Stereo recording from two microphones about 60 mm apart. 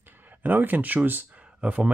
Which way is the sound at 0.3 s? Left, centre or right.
Right.